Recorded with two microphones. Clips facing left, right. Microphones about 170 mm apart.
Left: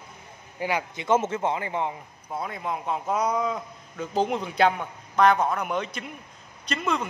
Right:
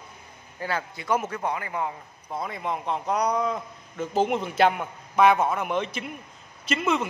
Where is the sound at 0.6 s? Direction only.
15° left (ahead or behind).